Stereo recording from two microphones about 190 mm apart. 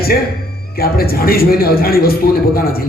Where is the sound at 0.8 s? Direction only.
55° left (ahead or behind).